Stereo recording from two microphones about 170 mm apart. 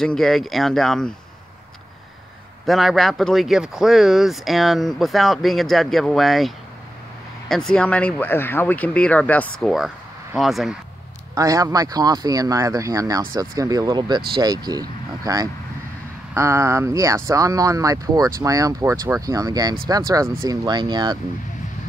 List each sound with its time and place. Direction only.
0.0 s speech: 5° left (ahead or behind)
2.6 s speech: centre (ahead or behind)
11.3 s speech: 20° right (ahead or behind)